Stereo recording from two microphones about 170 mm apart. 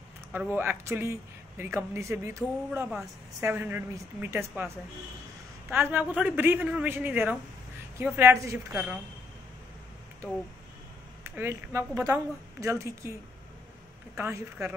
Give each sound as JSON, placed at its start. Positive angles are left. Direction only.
{"t": 0.3, "sound": "a woman's voice", "side_deg": -10}
{"t": 11.2, "sound": "a woman's voice", "side_deg": -15}
{"t": 14.1, "sound": "a woman's voice", "side_deg": -15}